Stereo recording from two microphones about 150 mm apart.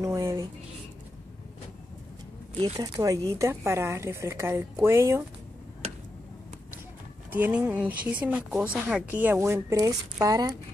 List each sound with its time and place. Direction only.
0.0 s a sound: 20° right (ahead or behind)
2.5 s speech: 40° right (ahead or behind)
2.8 s a woman's voice: 25° right (ahead or behind)
7.2 s a woman's voice: 15° right (ahead or behind)